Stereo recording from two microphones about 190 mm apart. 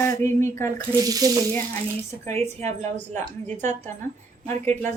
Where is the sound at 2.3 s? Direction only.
35° right (ahead or behind).